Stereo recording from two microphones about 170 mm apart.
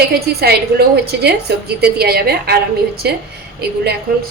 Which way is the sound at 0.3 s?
70° right (ahead or behind).